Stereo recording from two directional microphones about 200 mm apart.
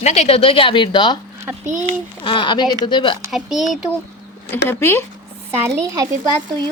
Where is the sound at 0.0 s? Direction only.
35° left (ahead or behind).